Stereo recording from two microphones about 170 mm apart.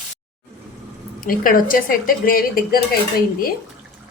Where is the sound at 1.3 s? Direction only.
55° left (ahead or behind).